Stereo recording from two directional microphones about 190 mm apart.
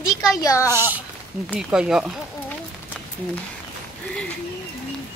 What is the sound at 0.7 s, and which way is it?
Speech, 10° right (ahead or behind).